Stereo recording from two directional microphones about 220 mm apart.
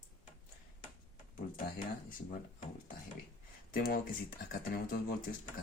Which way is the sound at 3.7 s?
45° left (ahead or behind).